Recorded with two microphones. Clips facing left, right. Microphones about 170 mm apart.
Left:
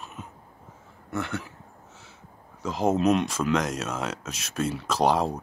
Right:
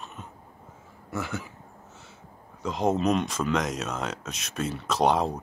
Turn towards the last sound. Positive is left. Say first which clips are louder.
# even
turn(degrees=0)  # may be behind; listen again after turning